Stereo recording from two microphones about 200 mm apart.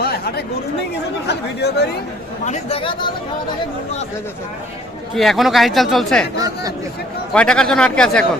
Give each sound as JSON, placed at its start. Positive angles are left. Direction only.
{"t": 0.0, "sound": "chatter", "side_deg": 50}
{"t": 1.3, "sound": "speech", "side_deg": 55}
{"t": 2.4, "sound": "speech", "side_deg": 30}
{"t": 5.1, "sound": "speech", "side_deg": 0}
{"t": 6.4, "sound": "speech", "side_deg": -20}
{"t": 7.3, "sound": "speech", "side_deg": 5}